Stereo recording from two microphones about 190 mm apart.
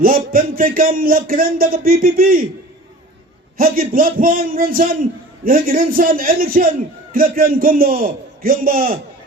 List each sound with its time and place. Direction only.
0.0 s speech: 50° right (ahead or behind)
3.6 s speech: 50° right (ahead or behind)